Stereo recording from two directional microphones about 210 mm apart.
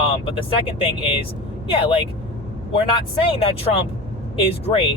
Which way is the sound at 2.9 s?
25° left (ahead or behind).